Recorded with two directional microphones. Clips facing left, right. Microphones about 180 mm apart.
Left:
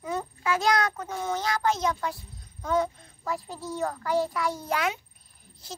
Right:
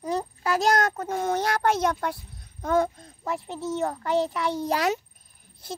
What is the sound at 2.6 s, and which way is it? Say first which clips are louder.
Speech: right 3 dB; 50° right (ahead or behind).